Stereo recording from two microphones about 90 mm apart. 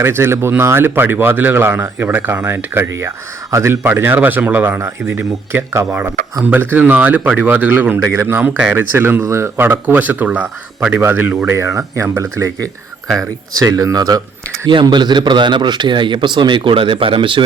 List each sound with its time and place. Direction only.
0.0 s speech: 25° right (ahead or behind)
11.4 s speech: 35° right (ahead or behind)
14.7 s a man's voice: 60° right (ahead or behind)